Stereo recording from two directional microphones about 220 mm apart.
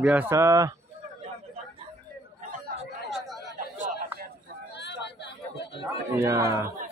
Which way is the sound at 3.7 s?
35° right (ahead or behind).